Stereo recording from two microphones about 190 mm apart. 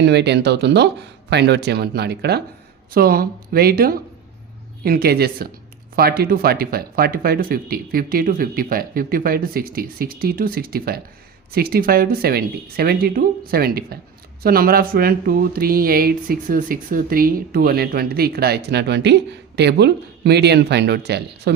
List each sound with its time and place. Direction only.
0.0 s speech: 65° right (ahead or behind)